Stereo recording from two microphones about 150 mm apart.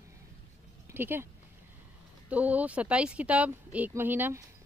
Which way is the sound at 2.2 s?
10° right (ahead or behind).